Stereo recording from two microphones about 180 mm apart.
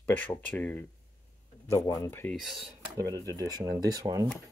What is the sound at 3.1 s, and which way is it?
Speech, 20° right (ahead or behind).